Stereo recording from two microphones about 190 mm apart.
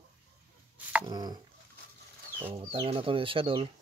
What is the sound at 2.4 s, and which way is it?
Speech, 30° right (ahead or behind).